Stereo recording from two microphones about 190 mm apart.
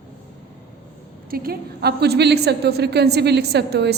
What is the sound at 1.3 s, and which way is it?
A woman's voice, 50° right (ahead or behind).